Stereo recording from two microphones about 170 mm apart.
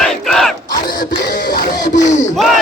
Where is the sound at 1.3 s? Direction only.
60° left (ahead or behind).